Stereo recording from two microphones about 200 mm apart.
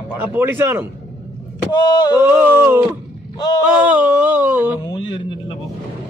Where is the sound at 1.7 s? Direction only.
20° left (ahead or behind).